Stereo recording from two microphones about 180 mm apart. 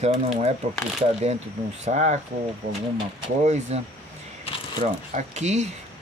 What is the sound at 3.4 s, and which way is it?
Speech, 40° right (ahead or behind).